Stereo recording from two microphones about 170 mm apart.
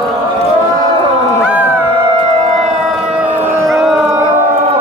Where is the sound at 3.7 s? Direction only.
Centre (ahead or behind).